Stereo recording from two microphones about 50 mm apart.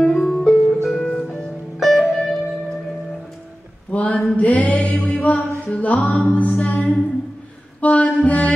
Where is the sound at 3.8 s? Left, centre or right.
Left.